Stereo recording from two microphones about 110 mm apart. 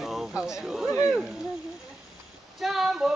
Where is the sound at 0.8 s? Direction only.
25° left (ahead or behind).